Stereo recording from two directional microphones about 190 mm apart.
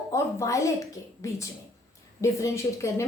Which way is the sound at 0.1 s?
15° left (ahead or behind).